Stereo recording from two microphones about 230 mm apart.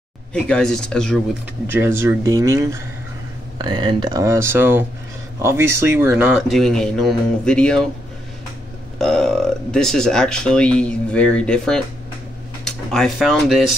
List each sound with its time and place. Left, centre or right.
0.3 s speech: centre
1.7 s speech: centre
8.9 s speech: centre